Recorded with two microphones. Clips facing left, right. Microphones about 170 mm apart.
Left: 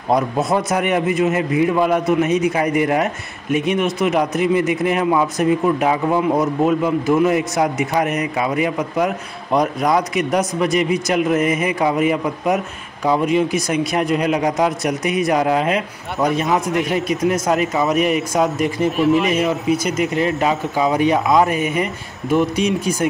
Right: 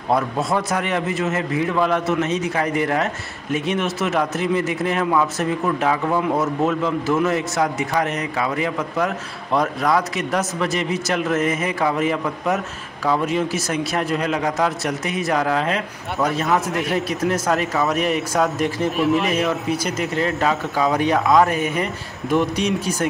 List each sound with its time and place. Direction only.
0.1 s a man's voice: 20° left (ahead or behind)
16.2 s speech: centre (ahead or behind)
17.2 s a man's voice: 15° left (ahead or behind)
18.8 s speech: centre (ahead or behind)
20.0 s a man's voice: 15° left (ahead or behind)